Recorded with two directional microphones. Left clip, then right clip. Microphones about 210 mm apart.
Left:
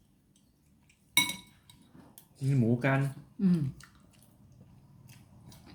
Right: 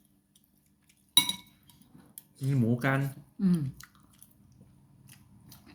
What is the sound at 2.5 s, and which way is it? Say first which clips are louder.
Speech: even; 55° right (ahead or behind).